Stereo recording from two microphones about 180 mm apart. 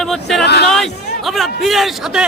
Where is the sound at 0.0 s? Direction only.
Centre (ahead or behind).